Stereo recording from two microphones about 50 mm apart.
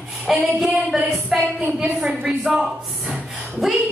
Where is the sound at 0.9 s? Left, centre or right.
Centre.